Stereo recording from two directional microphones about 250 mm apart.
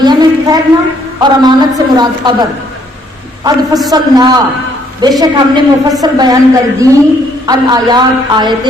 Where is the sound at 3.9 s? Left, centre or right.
Centre.